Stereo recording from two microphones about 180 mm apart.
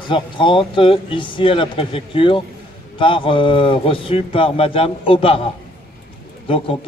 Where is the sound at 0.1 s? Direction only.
25° left (ahead or behind).